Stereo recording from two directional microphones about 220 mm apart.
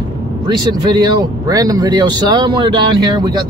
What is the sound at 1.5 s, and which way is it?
Speech, 15° right (ahead or behind).